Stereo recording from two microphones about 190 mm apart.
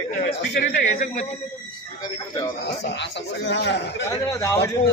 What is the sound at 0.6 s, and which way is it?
Speech, 40° left (ahead or behind).